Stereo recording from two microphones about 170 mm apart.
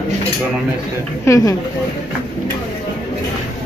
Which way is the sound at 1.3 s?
20° left (ahead or behind).